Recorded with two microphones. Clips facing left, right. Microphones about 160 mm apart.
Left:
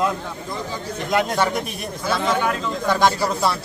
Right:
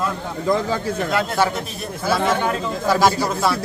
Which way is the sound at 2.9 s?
5° right (ahead or behind).